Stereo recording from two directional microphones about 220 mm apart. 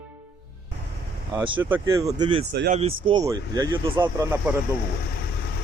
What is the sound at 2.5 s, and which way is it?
Speech, 50° right (ahead or behind).